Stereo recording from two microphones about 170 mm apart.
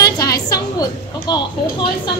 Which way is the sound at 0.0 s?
20° left (ahead or behind).